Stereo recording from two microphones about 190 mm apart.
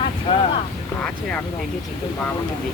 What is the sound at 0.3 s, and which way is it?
Vehicle, 25° left (ahead or behind).